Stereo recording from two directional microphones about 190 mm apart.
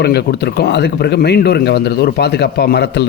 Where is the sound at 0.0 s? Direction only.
60° left (ahead or behind).